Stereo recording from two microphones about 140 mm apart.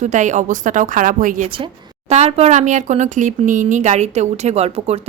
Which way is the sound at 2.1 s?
55° right (ahead or behind).